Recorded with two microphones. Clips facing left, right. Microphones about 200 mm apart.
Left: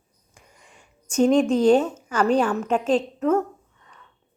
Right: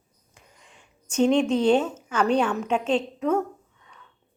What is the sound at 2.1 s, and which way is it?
A woman's voice, 5° left (ahead or behind).